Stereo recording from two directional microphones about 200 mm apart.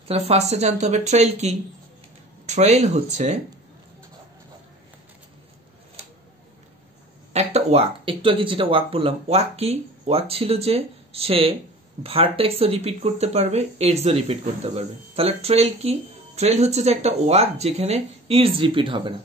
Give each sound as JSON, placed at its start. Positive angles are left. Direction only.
{"t": 0.1, "sound": "speech", "side_deg": -30}
{"t": 7.3, "sound": "speech", "side_deg": -30}